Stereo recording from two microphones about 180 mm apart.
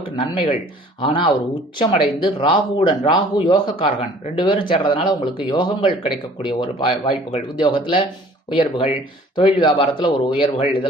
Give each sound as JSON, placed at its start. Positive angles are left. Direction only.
{"t": 1.0, "sound": "speech", "side_deg": 30}